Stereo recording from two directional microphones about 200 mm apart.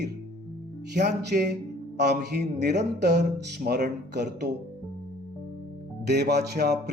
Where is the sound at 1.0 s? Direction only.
55° right (ahead or behind).